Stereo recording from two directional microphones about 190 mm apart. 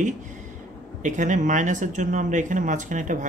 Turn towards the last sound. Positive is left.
turn(degrees=-40)  # may be behind; listen again after turning